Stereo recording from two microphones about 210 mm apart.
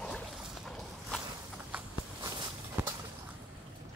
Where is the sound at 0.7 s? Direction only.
Centre (ahead or behind).